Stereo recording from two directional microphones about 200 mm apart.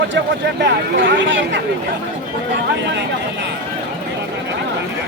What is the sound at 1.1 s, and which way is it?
Speech, 65° right (ahead or behind).